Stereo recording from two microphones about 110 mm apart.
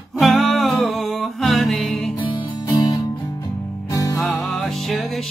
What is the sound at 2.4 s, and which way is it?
Music, 35° left (ahead or behind).